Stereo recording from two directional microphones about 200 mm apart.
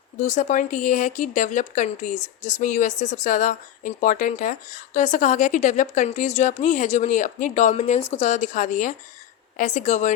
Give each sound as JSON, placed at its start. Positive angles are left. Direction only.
{"t": 0.2, "sound": "speech", "side_deg": 40}